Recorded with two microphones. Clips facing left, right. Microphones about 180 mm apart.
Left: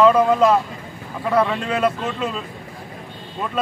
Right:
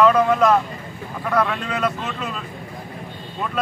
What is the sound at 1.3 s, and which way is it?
Speech, 25° left (ahead or behind).